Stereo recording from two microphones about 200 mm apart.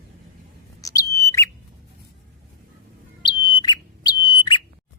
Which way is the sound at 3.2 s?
20° left (ahead or behind).